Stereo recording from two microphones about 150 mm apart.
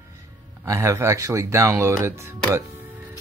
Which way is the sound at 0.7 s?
20° right (ahead or behind).